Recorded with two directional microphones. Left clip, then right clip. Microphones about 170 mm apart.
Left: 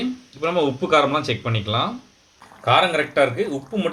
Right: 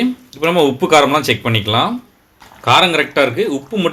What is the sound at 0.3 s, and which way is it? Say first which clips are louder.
Speech: right 7 dB; 55° right (ahead or behind).